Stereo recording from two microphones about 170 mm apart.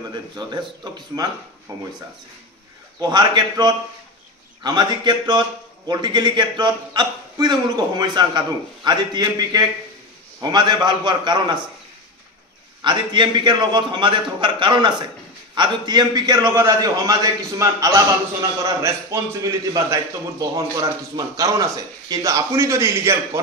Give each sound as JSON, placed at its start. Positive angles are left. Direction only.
{"t": 0.1, "sound": "a man's voice", "side_deg": -25}
{"t": 3.0, "sound": "a man's voice", "side_deg": -25}
{"t": 12.8, "sound": "a man's voice", "side_deg": -30}